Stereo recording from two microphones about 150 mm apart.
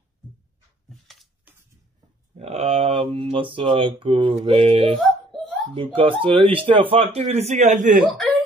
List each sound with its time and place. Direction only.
2.3 s mantra: 45° right (ahead or behind)
4.9 s a sound: 5° left (ahead or behind)
5.9 s mantra: 35° right (ahead or behind); by 8.0 s 55° right (ahead or behind)